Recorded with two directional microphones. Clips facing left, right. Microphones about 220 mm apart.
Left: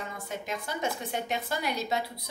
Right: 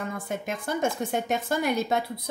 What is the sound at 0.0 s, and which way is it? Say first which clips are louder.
A woman's voice: right 6 dB; 50° right (ahead or behind).